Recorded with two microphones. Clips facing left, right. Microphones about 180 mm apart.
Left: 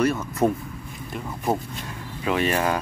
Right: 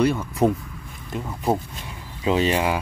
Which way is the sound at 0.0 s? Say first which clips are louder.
Right 2 dB; 15° right (ahead or behind).